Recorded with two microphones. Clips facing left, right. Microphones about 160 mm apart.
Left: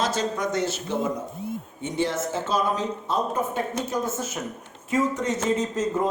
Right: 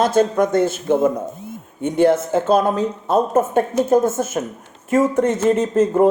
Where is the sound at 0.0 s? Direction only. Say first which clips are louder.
Right 10 dB; 55° right (ahead or behind).